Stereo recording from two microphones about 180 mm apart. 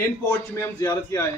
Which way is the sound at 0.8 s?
15° left (ahead or behind).